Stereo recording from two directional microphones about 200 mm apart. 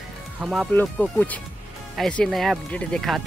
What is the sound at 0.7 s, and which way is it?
Speech, 10° left (ahead or behind).